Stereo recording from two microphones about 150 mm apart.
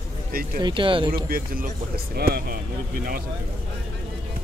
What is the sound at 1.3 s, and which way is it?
Speech, 75° right (ahead or behind).